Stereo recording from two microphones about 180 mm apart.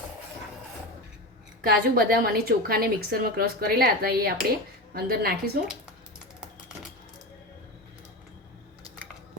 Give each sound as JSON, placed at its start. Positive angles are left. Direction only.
{"t": 1.6, "sound": "a woman's voice", "side_deg": -55}